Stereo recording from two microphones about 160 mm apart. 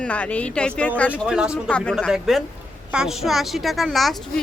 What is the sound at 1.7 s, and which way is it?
A woman's voice, 5° left (ahead or behind).